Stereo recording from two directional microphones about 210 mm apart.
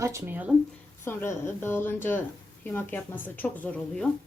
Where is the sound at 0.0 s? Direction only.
10° right (ahead or behind).